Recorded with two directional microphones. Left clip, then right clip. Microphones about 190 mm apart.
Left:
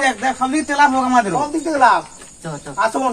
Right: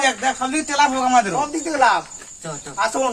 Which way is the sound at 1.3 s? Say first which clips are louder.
Left 2 dB; 10° right (ahead or behind).